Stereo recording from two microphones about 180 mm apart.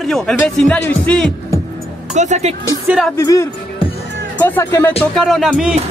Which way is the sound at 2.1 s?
40° right (ahead or behind).